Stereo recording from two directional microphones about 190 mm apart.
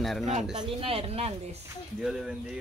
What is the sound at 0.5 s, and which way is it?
Speech, 30° right (ahead or behind).